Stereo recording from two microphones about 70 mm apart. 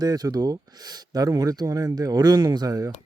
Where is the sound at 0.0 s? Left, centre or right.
Right.